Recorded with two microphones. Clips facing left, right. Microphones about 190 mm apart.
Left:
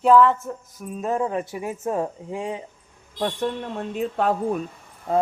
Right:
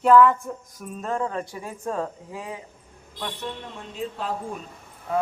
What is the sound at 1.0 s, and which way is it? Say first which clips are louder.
Speech: left 3 dB; 15° left (ahead or behind).